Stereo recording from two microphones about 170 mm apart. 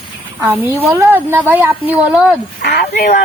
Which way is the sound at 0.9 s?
15° right (ahead or behind).